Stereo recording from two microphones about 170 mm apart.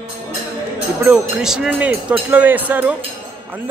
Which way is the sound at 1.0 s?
5° right (ahead or behind).